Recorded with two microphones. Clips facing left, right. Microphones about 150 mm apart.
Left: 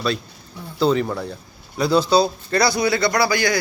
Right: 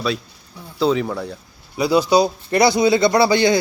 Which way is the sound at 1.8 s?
10° right (ahead or behind).